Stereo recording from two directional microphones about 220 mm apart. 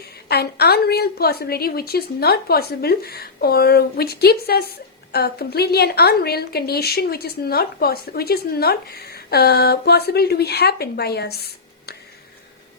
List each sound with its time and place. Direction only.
0.3 s a woman's voice: 45° left (ahead or behind)